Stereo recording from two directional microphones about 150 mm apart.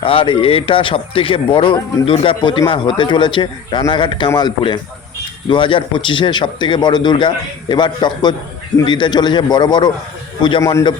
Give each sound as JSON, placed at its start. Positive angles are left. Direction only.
{"t": 0.0, "sound": "speech", "side_deg": 35}